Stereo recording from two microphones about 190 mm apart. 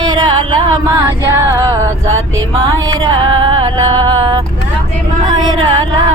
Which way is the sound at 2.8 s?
20° right (ahead or behind).